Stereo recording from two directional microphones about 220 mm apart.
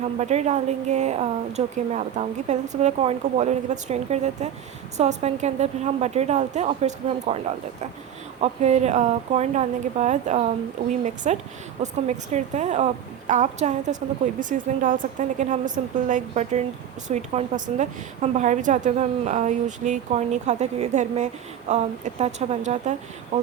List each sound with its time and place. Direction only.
0.2 s a woman's voice: 30° right (ahead or behind)